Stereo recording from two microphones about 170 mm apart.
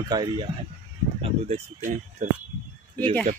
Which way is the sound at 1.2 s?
40° right (ahead or behind).